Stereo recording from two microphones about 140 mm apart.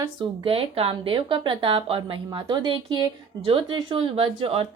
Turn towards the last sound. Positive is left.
turn(degrees=-45)  # may be behind; listen again after turning